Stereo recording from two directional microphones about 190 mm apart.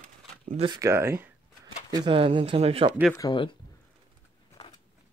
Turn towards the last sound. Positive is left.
turn(degrees=20)  # may be behind; listen again after turning